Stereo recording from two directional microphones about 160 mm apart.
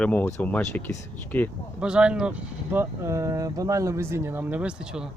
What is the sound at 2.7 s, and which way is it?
Speech, 15° right (ahead or behind).